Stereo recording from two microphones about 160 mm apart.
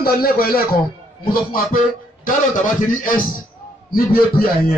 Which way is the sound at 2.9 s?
60° left (ahead or behind).